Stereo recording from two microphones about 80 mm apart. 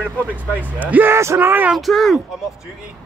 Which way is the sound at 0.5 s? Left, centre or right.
Right.